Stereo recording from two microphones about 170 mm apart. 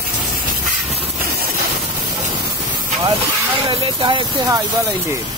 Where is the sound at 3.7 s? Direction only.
30° right (ahead or behind).